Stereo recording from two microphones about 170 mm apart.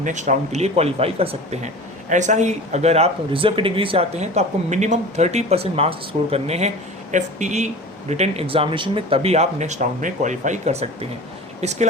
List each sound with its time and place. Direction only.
0.0 s speech: 45° right (ahead or behind)